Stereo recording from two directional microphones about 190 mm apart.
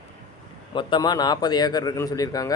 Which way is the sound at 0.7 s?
25° left (ahead or behind).